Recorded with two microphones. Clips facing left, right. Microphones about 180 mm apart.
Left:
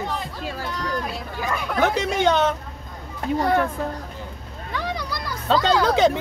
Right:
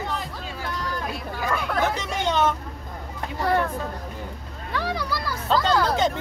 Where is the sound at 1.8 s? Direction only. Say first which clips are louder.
Left 5 dB; 70° left (ahead or behind).